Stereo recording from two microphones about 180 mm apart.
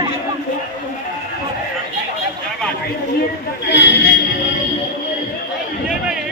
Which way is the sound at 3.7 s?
80° left.